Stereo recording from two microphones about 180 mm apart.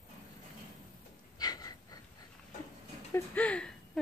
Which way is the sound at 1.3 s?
20° left (ahead or behind).